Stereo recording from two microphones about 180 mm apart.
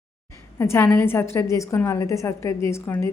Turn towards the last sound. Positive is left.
turn(degrees=10)  # may be behind; listen again after turning